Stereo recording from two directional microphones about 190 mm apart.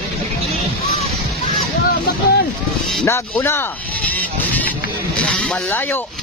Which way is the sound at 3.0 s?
15° left (ahead or behind).